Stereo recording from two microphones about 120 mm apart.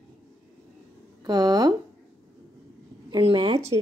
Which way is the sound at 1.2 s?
35° right (ahead or behind).